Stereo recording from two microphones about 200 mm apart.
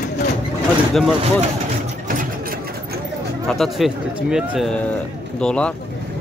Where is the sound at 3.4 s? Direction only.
Centre (ahead or behind).